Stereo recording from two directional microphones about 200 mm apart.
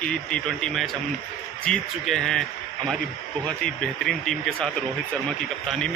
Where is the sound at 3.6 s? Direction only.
5° left (ahead or behind).